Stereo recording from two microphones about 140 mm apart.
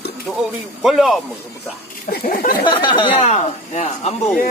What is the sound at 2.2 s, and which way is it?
Speech, 85° left.